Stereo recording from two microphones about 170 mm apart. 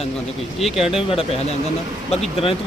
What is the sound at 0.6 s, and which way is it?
Speech, centre (ahead or behind).